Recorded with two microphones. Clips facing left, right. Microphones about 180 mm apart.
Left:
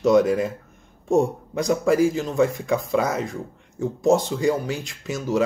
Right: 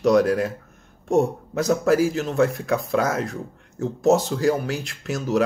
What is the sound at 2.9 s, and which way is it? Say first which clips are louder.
Speech: even; 90° right.